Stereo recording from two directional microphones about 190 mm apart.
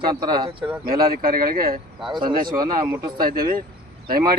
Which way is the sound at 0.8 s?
50° right (ahead or behind).